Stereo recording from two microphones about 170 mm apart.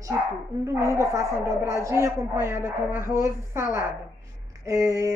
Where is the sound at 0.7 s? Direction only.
15° right (ahead or behind).